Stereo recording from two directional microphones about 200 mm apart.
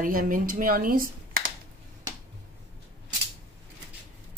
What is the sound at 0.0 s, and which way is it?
Speech, 45° right (ahead or behind).